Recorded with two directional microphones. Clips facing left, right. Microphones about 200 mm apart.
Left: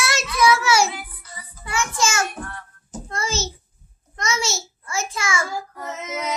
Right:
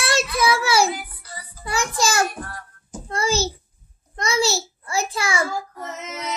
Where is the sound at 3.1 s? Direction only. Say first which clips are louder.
Right 5 dB; 35° right (ahead or behind).